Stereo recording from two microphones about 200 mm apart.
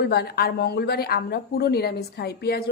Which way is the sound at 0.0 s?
55° left (ahead or behind).